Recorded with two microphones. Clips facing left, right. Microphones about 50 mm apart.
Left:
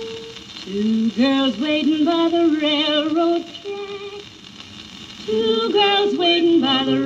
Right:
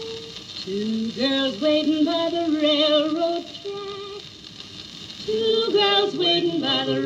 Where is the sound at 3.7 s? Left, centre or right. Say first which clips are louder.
Left 3 dB; left.